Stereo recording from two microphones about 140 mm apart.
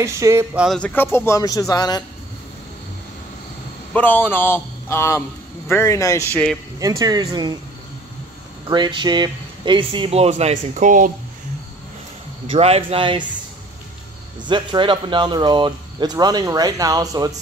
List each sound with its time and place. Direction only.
0.0 s speech: 20° right (ahead or behind)
0.7 s speech: 10° left (ahead or behind); by 2.0 s 30° left (ahead or behind)
3.9 s a man's voice: 15° left (ahead or behind)
6.3 s speech: 5° left (ahead or behind)
6.8 s speech: 25° right (ahead or behind)
8.6 s speech: 30° right (ahead or behind); by 11.1 s 65° right (ahead or behind)
12.4 s speech: 45° right (ahead or behind)
14.4 s speech: 35° right (ahead or behind)